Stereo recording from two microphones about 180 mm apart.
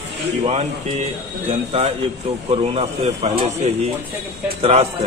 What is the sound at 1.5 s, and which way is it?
A man's voice, 35° right (ahead or behind).